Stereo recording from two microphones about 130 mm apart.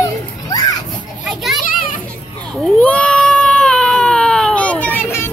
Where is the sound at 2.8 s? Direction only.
10° left (ahead or behind).